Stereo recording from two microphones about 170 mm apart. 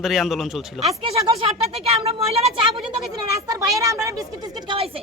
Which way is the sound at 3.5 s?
20° right (ahead or behind).